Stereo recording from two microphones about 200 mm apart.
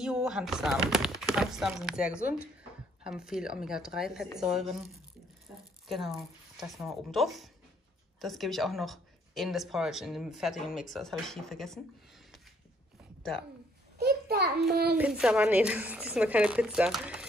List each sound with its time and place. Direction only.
0.0 s speech: 5° right (ahead or behind)
5.9 s speech: centre (ahead or behind)
13.9 s a child's voice: 50° right (ahead or behind)
15.0 s speech: 5° right (ahead or behind)